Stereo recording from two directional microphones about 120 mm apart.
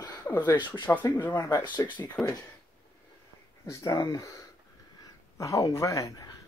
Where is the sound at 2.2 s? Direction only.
5° left (ahead or behind).